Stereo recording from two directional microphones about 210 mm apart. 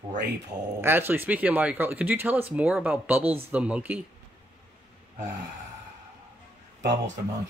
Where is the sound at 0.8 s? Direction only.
10° right (ahead or behind).